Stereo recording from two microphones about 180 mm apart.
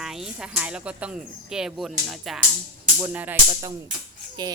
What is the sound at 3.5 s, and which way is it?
Speech, 20° right (ahead or behind).